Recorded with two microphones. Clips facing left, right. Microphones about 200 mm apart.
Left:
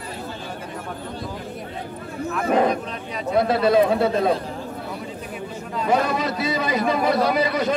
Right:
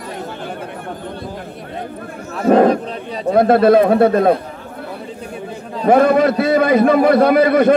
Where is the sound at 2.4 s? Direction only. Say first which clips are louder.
Right 9 dB; 55° right (ahead or behind).